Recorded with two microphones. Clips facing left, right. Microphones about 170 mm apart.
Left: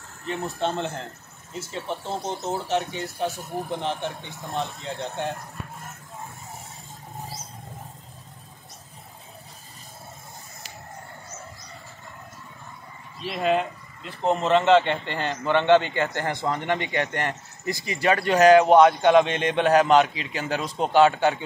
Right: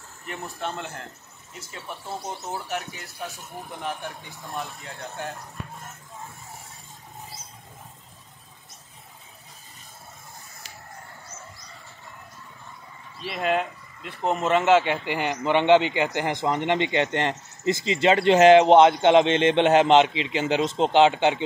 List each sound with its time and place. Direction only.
0.3 s speech: 25° left (ahead or behind)
13.2 s speech: centre (ahead or behind); by 21.5 s 20° right (ahead or behind)